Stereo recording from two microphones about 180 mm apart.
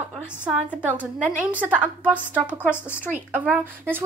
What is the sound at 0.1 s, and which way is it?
A woman's voice, 5° right (ahead or behind).